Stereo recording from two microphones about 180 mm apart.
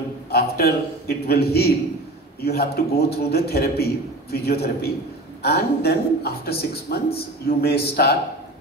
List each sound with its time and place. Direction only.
0.3 s a man's voice: 60° left (ahead or behind)